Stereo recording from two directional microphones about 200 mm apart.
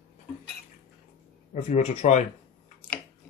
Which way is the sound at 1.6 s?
35° left (ahead or behind).